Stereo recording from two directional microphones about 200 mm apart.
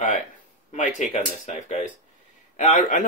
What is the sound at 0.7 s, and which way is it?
Speech, 35° left (ahead or behind).